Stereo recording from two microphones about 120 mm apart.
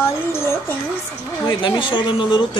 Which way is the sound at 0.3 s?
20° left (ahead or behind).